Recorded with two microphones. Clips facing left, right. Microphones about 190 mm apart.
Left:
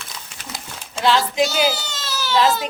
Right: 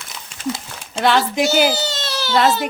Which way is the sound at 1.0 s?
60° right (ahead or behind).